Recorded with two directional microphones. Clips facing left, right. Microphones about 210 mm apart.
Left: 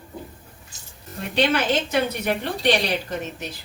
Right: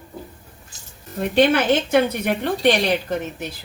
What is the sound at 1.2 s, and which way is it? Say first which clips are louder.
A woman's voice: right 5 dB; 55° right (ahead or behind).